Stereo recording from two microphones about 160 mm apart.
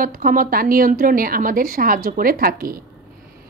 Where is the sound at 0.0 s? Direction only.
60° right (ahead or behind).